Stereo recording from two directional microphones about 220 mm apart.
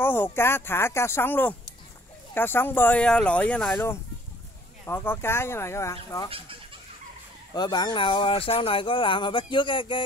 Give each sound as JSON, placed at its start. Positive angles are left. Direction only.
{"t": 0.0, "sound": "speech", "side_deg": 10}
{"t": 7.5, "sound": "speech", "side_deg": 20}